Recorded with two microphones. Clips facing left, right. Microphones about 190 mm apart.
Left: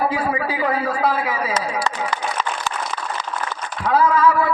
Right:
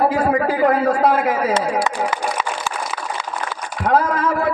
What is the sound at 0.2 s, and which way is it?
Speech, 45° right (ahead or behind).